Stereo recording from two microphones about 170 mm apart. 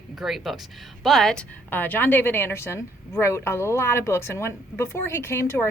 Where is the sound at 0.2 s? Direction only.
Centre (ahead or behind).